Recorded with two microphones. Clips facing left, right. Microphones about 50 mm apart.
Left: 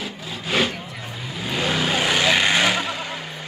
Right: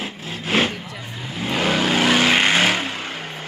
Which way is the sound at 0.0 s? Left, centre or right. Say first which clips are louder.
Right 2 dB; right.